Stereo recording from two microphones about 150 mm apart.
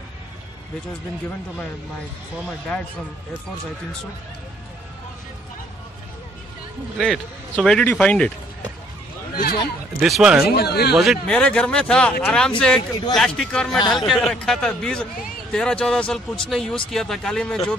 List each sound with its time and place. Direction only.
7.0 s speech: centre (ahead or behind)
9.3 s speech: 80° left
9.9 s speech: centre (ahead or behind)
10.5 s speech: 90° left
11.0 s speech: 5° left (ahead or behind)